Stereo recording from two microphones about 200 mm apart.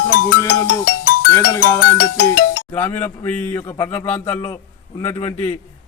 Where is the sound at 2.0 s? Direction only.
50° left (ahead or behind).